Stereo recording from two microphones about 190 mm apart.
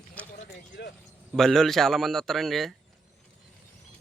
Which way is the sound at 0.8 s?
60° left (ahead or behind).